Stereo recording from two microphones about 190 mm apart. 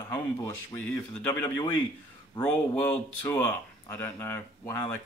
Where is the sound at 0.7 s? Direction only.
10° left (ahead or behind).